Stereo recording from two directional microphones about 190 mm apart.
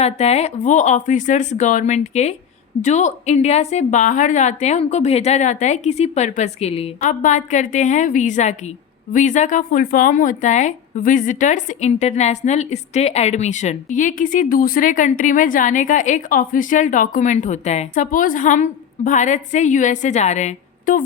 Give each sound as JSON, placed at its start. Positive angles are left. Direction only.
{"t": 0.0, "sound": "speech", "side_deg": 35}